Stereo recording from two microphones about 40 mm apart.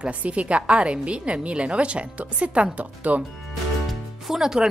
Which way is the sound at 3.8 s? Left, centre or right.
Centre.